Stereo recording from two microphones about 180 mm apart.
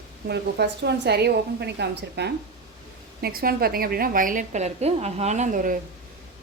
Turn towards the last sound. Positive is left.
turn(degrees=-45)  # may be behind; listen again after turning